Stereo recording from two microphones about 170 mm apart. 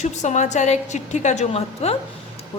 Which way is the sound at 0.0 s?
45° left (ahead or behind).